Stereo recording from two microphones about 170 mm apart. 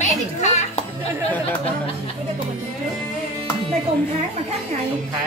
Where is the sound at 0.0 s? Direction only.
45° left (ahead or behind).